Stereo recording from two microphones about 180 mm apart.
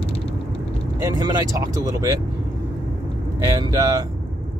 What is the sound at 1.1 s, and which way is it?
Speech, 20° right (ahead or behind).